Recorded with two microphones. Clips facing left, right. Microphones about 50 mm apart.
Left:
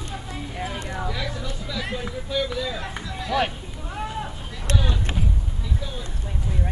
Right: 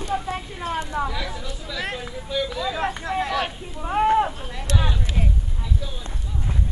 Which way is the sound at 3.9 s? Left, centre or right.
Right.